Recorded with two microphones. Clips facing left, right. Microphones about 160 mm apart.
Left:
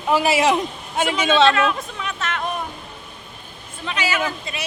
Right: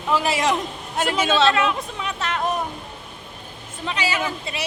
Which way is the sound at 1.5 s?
25° right (ahead or behind).